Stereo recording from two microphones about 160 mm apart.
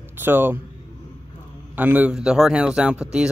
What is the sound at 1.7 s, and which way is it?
A man's voice, 10° right (ahead or behind).